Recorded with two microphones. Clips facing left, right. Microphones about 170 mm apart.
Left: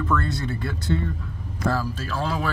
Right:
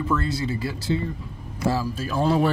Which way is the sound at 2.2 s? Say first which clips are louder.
Right 7 dB; 25° right (ahead or behind).